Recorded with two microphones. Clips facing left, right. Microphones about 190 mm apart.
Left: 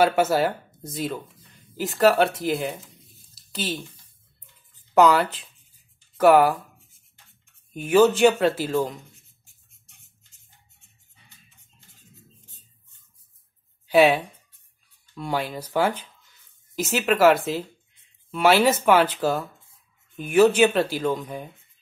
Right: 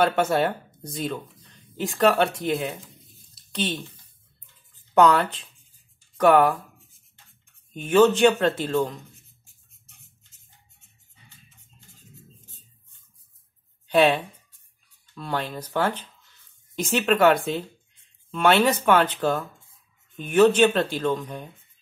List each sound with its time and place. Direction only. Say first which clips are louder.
0.0 s speech: left 1 dB; 5° left (ahead or behind)
3.1 s a sound: even; centre (ahead or behind)
4.9 s speech: left 1 dB; 5° left (ahead or behind)
6.1 s writing: left 1 dB; 5° left (ahead or behind)
7.7 s speech: even; 10° left (ahead or behind)
13.8 s speech: left 2 dB; 5° left (ahead or behind)
15.1 s speech: left 2 dB; 10° left (ahead or behind)